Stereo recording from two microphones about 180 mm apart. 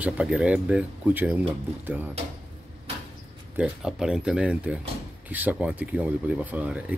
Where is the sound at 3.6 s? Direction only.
5° right (ahead or behind).